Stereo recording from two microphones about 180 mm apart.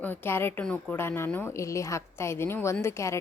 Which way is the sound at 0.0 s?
10° left (ahead or behind).